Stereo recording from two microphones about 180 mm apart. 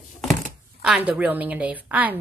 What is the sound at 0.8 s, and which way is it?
A woman's voice, 5° right (ahead or behind).